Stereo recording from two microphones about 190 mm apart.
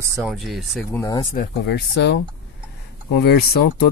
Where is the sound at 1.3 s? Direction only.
60° left (ahead or behind).